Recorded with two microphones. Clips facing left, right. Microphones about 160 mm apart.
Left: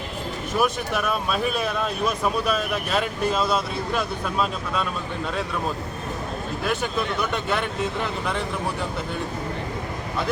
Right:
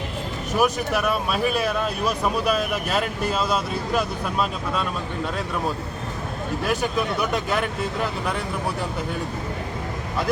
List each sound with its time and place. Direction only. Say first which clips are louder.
0.6 s speech: right 3 dB; 5° right (ahead or behind)
6.7 s speech: right 1 dB; 10° right (ahead or behind)